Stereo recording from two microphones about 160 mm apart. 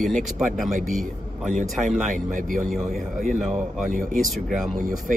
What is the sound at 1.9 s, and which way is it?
Speech, 55° right (ahead or behind).